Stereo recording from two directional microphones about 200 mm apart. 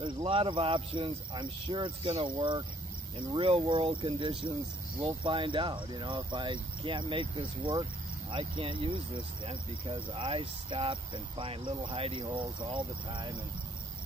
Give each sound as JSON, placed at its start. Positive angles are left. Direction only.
{"t": 0.0, "sound": "speech", "side_deg": -25}